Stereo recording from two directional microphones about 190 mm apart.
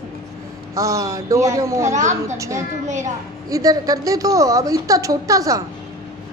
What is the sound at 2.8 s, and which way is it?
Speech, 40° right (ahead or behind).